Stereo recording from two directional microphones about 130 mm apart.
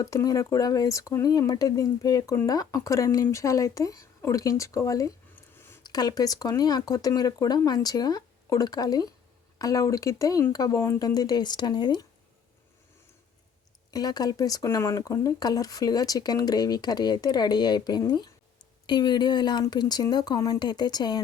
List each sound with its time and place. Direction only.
0.0 s speech: 25° left (ahead or behind)
5.3 s a sound: 15° left (ahead or behind)
5.8 s speech: 30° left (ahead or behind)
13.9 s speech: 30° left (ahead or behind)